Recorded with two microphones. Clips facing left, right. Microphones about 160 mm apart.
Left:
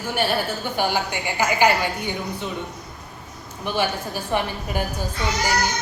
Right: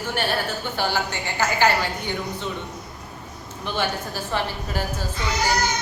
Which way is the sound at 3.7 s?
15° left (ahead or behind).